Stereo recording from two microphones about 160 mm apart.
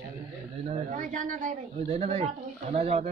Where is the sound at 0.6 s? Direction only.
50° right (ahead or behind).